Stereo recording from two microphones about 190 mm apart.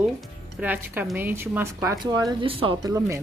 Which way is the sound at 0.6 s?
10° right (ahead or behind).